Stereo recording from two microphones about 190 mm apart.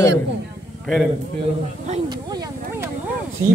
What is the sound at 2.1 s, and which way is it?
Speech, 20° right (ahead or behind).